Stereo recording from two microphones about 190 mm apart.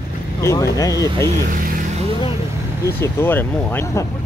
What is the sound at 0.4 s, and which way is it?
Speech, 15° left (ahead or behind).